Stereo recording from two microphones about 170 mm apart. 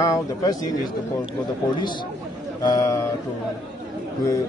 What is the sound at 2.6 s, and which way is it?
Speech, 20° left (ahead or behind).